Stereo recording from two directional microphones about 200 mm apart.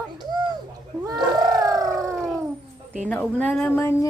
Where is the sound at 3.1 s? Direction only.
5° left (ahead or behind).